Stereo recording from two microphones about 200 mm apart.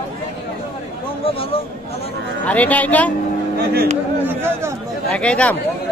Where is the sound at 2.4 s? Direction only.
5° left (ahead or behind).